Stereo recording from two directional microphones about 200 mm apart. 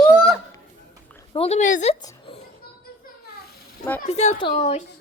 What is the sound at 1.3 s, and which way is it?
Speech, 30° left (ahead or behind).